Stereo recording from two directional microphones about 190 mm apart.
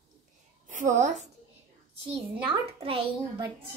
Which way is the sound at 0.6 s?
40° right (ahead or behind).